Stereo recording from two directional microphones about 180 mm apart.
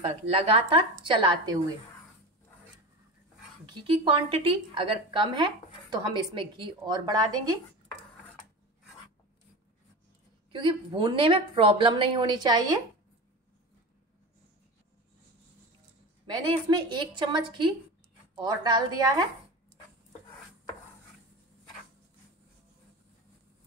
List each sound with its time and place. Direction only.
0.0 s a woman's voice: 30° right (ahead or behind)
3.6 s a woman's voice: 25° right (ahead or behind)
10.5 s a woman's voice: 25° right (ahead or behind)
16.3 s a woman's voice: 25° right (ahead or behind)